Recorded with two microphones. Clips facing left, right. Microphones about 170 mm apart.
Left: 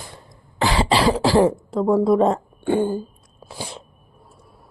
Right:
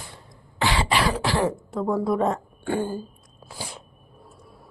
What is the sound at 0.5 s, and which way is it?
Throat clearing, 35° left (ahead or behind).